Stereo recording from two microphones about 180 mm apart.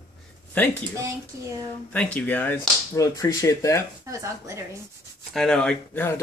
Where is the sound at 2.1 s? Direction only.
10° left (ahead or behind).